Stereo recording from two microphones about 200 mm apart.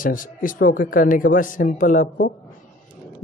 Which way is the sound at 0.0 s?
45° left (ahead or behind).